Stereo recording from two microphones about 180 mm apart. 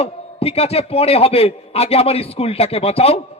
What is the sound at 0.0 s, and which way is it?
A man's voice, 35° left (ahead or behind).